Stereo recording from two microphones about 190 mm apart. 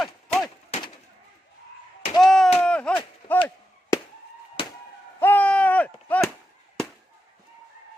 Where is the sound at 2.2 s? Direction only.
Centre (ahead or behind).